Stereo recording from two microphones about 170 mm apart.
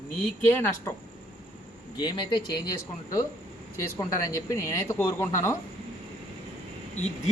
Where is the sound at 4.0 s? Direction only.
20° left (ahead or behind).